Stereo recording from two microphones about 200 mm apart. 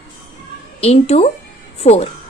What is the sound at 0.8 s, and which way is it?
A woman's voice, 30° left (ahead or behind).